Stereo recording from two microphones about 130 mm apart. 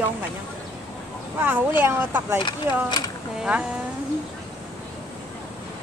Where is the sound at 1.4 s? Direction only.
15° right (ahead or behind).